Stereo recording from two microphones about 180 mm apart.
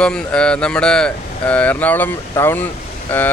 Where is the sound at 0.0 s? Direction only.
5° left (ahead or behind).